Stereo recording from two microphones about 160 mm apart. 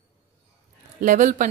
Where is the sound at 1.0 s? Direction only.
55° right (ahead or behind).